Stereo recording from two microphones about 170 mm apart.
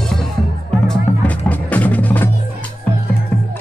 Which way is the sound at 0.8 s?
10° left (ahead or behind).